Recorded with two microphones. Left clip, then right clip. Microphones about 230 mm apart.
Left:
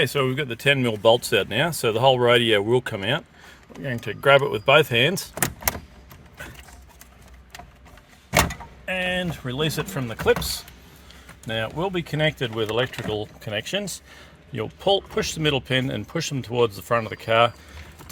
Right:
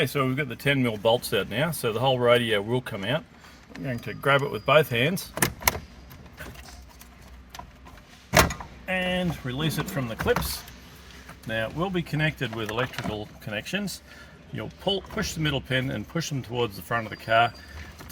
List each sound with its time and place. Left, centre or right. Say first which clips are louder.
0.0 s speech: left 3 dB; left
8.9 s speech: left 2 dB; left
11.4 s speech: left 2 dB; left